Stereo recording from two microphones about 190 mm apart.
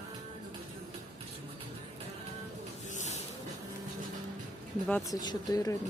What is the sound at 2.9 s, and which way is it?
Vehicle, 40° left (ahead or behind).